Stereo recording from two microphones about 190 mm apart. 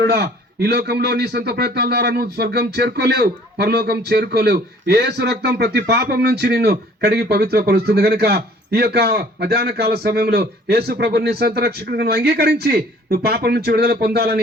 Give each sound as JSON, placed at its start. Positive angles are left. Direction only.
{"t": 0.0, "sound": "speech", "side_deg": -55}